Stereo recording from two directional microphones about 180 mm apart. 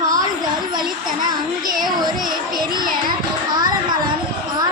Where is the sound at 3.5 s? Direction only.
25° right (ahead or behind).